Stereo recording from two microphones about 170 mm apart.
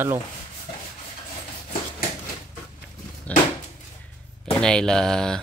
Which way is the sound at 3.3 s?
10° left (ahead or behind).